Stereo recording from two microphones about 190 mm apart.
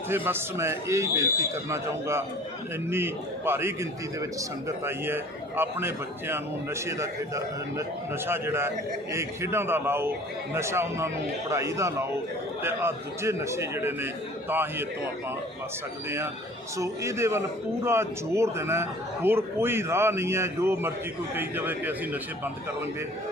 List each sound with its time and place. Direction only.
0.1 s a man's voice: 10° right (ahead or behind)
16.0 s a man's voice: 10° right (ahead or behind)